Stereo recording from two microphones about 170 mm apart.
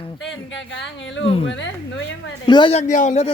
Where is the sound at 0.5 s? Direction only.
90° left.